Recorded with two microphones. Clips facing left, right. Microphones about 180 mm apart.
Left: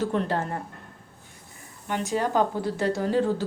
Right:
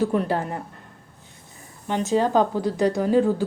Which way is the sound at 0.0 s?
15° right (ahead or behind).